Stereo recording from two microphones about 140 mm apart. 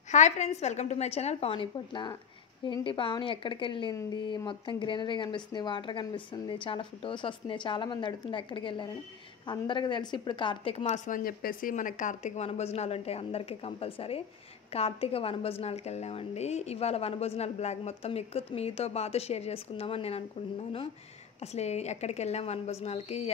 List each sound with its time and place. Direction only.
0.1 s a woman's voice: 55° left (ahead or behind)
11.1 s a woman's voice: 80° left; by 20.2 s 45° left (ahead or behind)
21.4 s a woman's voice: 50° left (ahead or behind)